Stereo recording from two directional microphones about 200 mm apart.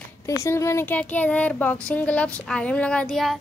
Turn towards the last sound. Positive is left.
turn(degrees=0)  # may be behind; listen again after turning